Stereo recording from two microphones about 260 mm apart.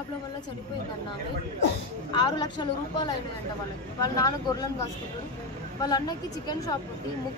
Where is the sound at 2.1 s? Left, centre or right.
Centre.